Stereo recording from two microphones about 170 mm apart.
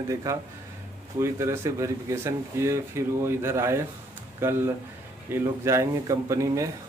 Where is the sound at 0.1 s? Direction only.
20° right (ahead or behind).